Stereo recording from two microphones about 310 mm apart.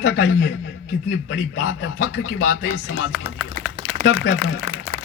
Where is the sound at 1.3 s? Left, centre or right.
Left.